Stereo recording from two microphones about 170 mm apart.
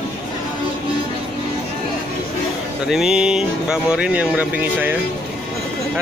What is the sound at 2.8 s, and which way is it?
Speech, 5° right (ahead or behind).